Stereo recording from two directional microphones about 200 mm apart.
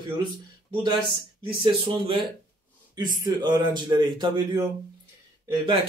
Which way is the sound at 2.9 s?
20° right (ahead or behind).